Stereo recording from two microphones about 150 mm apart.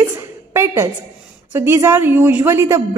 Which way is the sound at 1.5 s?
15° right (ahead or behind).